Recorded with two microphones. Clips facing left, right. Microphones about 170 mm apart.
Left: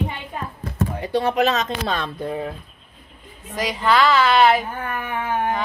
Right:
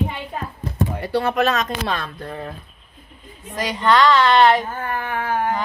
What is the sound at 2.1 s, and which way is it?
Speech, 10° left (ahead or behind).